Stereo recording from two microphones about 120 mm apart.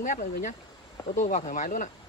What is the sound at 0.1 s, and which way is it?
Speech, 90° left.